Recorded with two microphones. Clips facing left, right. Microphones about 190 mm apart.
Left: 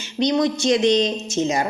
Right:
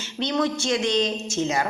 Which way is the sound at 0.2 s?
15° left (ahead or behind).